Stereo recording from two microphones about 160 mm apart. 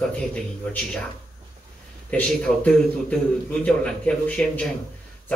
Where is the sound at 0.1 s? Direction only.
10° left (ahead or behind).